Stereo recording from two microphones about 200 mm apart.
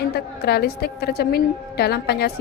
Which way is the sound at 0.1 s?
55° left (ahead or behind).